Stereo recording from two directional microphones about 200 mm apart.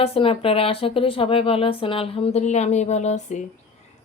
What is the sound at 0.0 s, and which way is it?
Speech, 30° left (ahead or behind).